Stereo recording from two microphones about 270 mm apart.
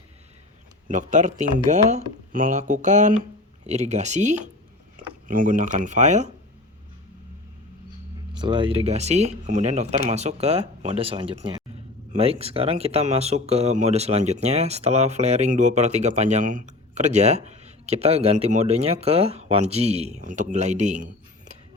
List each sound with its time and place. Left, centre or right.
0.9 s speech: right
8.4 s speech: centre